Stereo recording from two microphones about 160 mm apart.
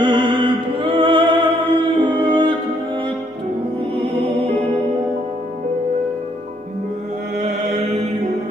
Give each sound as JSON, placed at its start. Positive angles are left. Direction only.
{"t": 0.0, "sound": "music", "side_deg": -30}
{"t": 7.3, "sound": "mantra", "side_deg": -50}